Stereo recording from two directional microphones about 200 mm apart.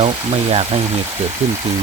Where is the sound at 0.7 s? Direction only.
30° right (ahead or behind).